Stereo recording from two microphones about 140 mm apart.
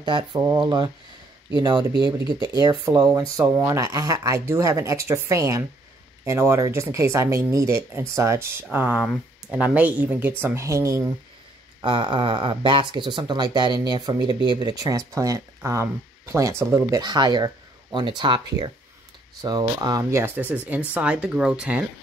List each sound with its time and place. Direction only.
0.0 s speech: 35° right (ahead or behind)
11.8 s speech: 35° right (ahead or behind); by 17.0 s 20° right (ahead or behind)
17.0 s speech: 30° right (ahead or behind); by 21.8 s 10° right (ahead or behind)